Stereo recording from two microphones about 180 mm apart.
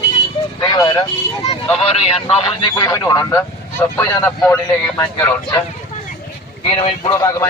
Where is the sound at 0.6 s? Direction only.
25° left (ahead or behind).